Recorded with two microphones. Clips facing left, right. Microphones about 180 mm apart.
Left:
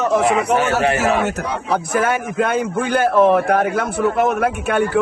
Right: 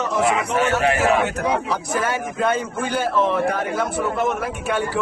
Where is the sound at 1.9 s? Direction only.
60° left (ahead or behind).